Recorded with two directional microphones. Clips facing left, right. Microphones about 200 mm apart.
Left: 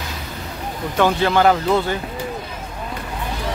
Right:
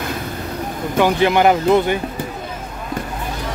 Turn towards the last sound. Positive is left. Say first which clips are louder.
# right 3 dB
turn(degrees=-20)  # may be behind; listen again after turning